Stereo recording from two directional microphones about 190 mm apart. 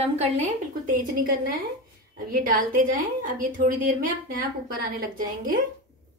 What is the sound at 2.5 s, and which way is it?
A woman's voice, 45° right (ahead or behind).